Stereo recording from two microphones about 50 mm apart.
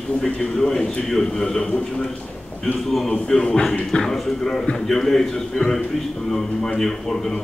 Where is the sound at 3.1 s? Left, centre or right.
Centre.